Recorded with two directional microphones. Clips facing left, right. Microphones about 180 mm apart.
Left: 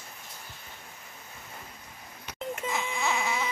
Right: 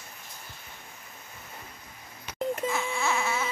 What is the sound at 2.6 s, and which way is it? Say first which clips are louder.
Music: left 2 dB; 20° left (ahead or behind).